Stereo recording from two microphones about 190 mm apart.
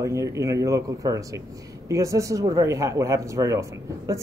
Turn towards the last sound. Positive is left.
turn(degrees=-15)  # may be behind; listen again after turning